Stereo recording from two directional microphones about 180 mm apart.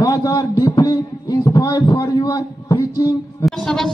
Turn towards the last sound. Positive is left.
turn(degrees=5)  # may be behind; listen again after turning